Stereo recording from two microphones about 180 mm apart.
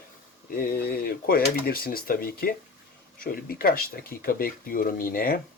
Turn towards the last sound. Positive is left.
turn(degrees=55)  # may be behind; listen again after turning